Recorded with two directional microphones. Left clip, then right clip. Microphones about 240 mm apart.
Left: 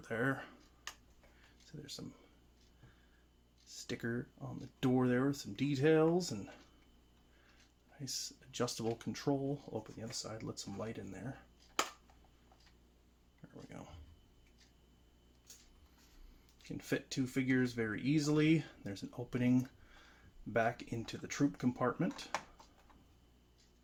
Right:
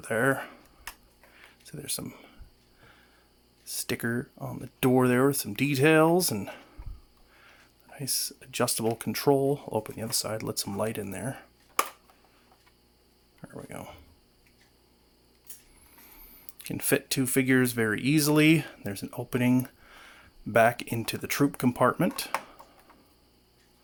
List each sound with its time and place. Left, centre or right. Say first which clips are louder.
0.0 s speech: right 11 dB; right
1.6 s speech: right 11 dB; right
3.7 s speech: right 11 dB; right
7.9 s speech: right 10 dB; right
13.5 s speech: right 12 dB; right
16.6 s speech: right 12 dB; right